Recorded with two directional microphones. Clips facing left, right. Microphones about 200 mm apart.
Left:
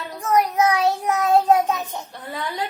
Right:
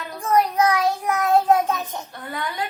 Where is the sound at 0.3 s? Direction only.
20° left (ahead or behind).